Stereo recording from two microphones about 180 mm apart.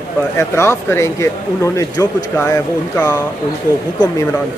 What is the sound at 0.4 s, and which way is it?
Speech, 15° left (ahead or behind).